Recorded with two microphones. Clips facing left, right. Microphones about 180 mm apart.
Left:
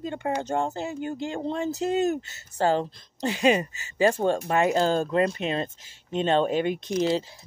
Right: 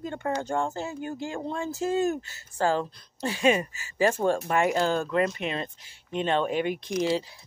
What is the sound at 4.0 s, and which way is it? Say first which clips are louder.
Speech: left 2 dB; 35° left (ahead or behind).